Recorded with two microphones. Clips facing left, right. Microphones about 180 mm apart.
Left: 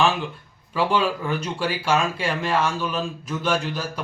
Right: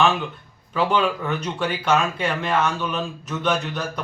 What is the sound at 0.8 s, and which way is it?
Speech, 10° left (ahead or behind).